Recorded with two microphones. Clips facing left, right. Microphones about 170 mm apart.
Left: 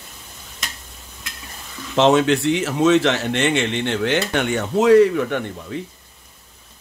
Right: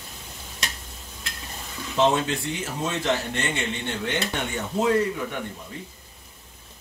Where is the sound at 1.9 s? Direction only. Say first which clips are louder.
Left 7 dB; 80° left.